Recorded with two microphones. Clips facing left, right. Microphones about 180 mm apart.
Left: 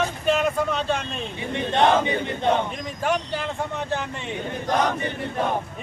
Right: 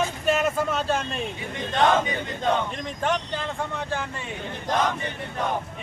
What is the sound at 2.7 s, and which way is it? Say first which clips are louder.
Speech: left 1 dB; 5° left (ahead or behind).